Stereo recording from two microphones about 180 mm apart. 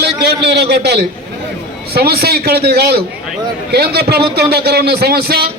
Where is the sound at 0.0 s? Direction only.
65° right (ahead or behind).